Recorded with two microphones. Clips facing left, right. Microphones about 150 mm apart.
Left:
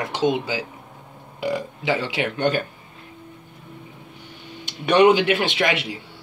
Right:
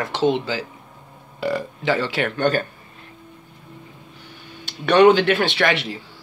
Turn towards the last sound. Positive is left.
turn(degrees=10)  # may be behind; listen again after turning